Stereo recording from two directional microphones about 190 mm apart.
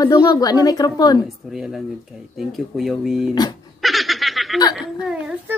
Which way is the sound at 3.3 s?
20° left (ahead or behind).